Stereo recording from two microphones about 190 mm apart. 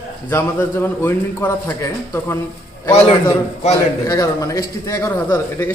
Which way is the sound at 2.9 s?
35° left (ahead or behind).